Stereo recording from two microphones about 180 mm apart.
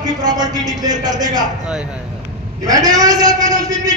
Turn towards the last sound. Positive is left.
turn(degrees=-20)  # may be behind; listen again after turning